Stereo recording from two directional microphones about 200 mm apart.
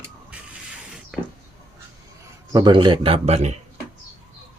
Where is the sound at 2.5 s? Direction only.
20° right (ahead or behind).